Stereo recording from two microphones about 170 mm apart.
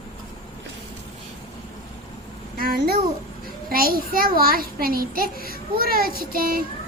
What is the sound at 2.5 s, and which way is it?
Babbling, 60° right (ahead or behind).